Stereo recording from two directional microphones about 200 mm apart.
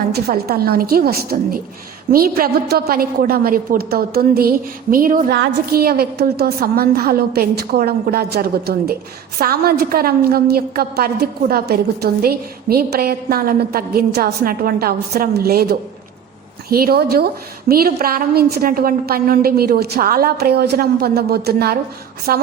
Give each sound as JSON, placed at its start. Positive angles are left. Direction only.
{"t": 0.1, "sound": "a woman's voice", "side_deg": -50}